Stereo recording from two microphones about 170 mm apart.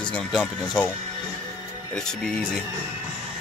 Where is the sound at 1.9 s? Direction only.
5° left (ahead or behind).